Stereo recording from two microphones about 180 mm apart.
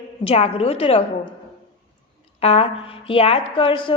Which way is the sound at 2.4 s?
35° left (ahead or behind).